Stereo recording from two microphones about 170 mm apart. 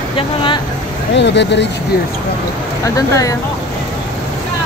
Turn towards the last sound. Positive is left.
turn(degrees=20)  # may be behind; listen again after turning